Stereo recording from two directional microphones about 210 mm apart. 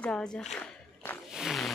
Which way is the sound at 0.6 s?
10° left (ahead or behind).